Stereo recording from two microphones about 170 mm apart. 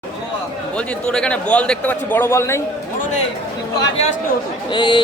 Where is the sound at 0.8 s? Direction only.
5° left (ahead or behind).